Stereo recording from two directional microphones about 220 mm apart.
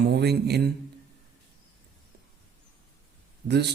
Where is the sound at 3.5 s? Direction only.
50° right (ahead or behind).